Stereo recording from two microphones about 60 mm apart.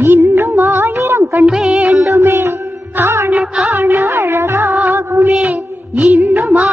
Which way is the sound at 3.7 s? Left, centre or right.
Right.